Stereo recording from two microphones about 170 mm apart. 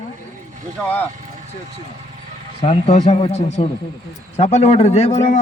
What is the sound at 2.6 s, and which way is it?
A man's voice, 40° left (ahead or behind).